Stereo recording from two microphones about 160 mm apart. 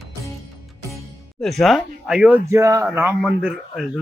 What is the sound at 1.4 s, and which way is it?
Speech, centre (ahead or behind).